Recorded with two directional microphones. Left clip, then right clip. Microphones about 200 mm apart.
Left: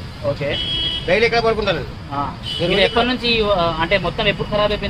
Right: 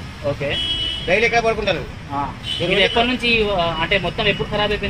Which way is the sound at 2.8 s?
25° right (ahead or behind).